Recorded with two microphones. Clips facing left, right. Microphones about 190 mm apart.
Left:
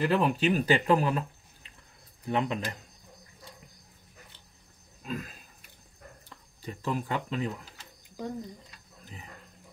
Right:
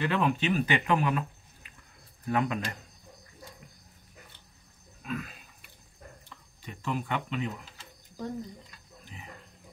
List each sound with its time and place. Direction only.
0.0 s speech: 35° left (ahead or behind)
5.0 s a sound: 35° left (ahead or behind)
6.2 s speech: 35° left (ahead or behind)